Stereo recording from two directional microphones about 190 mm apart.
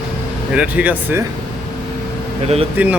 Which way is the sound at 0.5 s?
5° right (ahead or behind).